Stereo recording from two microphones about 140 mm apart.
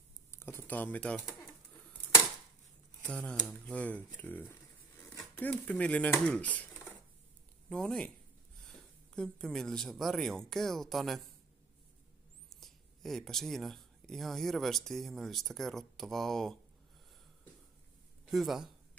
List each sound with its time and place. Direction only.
0.3 s speech: 15° left (ahead or behind)
3.0 s speech: 10° left (ahead or behind)
7.7 s speech: 5° left (ahead or behind)
12.4 s speech: centre (ahead or behind)
18.3 s speech: centre (ahead or behind)